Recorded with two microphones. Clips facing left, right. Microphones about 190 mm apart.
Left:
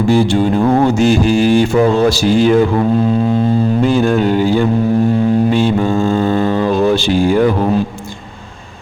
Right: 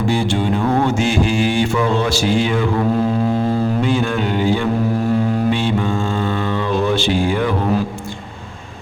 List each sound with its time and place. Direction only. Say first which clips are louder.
0.1 s mantra: left 7 dB; 40° left (ahead or behind)
3.8 s mantra: left 6 dB; 40° left (ahead or behind)